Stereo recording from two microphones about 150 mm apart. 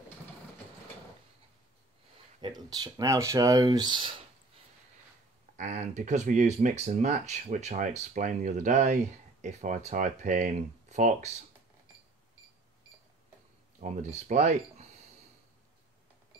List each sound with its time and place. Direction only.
2.4 s speech: 25° right (ahead or behind)
5.6 s speech: 50° right (ahead or behind)
13.7 s speech: 55° right (ahead or behind)